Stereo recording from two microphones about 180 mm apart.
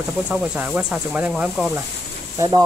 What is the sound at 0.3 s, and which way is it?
Speech, 5° right (ahead or behind).